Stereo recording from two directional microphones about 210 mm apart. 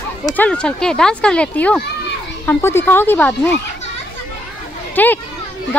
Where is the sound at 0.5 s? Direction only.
5° left (ahead or behind).